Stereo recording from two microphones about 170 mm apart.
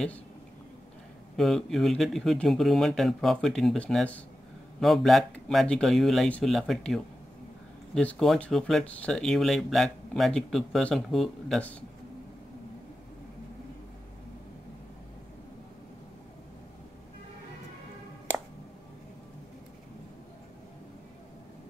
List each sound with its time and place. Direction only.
1.3 s speech: centre (ahead or behind)